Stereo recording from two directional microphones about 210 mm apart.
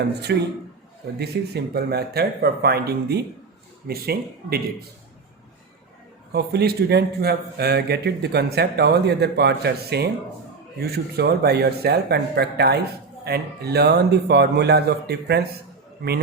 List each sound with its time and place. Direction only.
0.3 s speech: 55° right (ahead or behind)
6.3 s speech: 50° right (ahead or behind)